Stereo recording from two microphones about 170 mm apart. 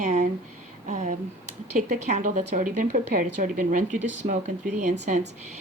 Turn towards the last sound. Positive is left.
turn(degrees=-45)  # may be behind; listen again after turning